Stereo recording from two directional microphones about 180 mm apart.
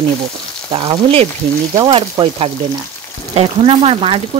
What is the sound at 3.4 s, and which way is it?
Speech, 35° right (ahead or behind).